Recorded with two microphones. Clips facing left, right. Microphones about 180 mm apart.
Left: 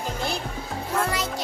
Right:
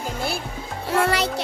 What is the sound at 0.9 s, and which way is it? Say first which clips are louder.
Speech: right 6 dB; 75° right (ahead or behind).